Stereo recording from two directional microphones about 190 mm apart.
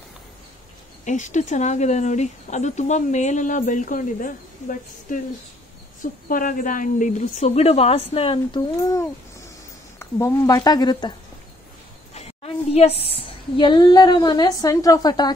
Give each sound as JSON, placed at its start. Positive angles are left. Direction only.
{"t": 1.0, "sound": "speech", "side_deg": 40}
{"t": 6.2, "sound": "speech", "side_deg": 45}
{"t": 9.9, "sound": "a woman's voice", "side_deg": 15}
{"t": 12.7, "sound": "a woman's voice", "side_deg": 30}